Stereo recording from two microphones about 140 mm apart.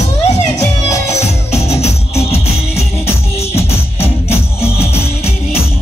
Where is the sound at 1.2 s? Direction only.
50° left (ahead or behind).